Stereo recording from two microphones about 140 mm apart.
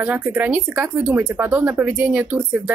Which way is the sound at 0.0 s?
10° right (ahead or behind).